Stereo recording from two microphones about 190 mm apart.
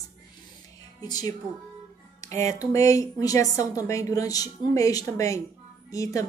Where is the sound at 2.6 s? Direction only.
15° left (ahead or behind).